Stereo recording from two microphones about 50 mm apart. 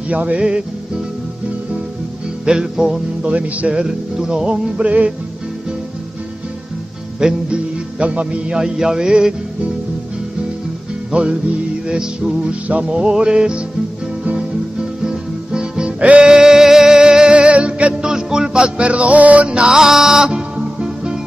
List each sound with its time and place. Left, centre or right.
0.1 s music: right
2.4 s music: centre
3.8 s music: centre
7.2 s music: centre
11.1 s music: right
12.6 s music: right
19.8 s music: centre